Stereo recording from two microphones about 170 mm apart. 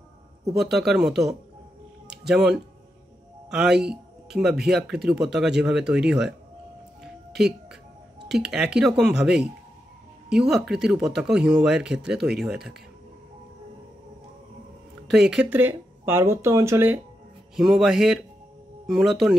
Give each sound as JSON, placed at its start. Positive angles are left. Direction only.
{"t": 0.6, "sound": "speech", "side_deg": 0}
{"t": 3.9, "sound": "music", "side_deg": 0}
{"t": 4.6, "sound": "speech", "side_deg": 0}
{"t": 7.0, "sound": "music", "side_deg": -5}
{"t": 8.3, "sound": "speech", "side_deg": -5}
{"t": 15.0, "sound": "speech", "side_deg": -5}
{"t": 17.6, "sound": "speech", "side_deg": 0}